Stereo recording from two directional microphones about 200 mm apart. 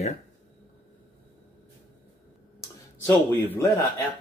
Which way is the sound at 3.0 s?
10° left (ahead or behind).